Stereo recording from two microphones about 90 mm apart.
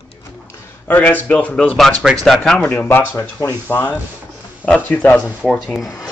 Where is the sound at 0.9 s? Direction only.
20° left (ahead or behind).